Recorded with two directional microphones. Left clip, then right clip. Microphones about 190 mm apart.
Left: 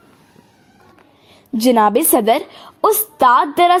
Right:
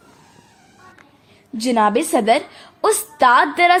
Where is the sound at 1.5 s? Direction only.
40° left (ahead or behind).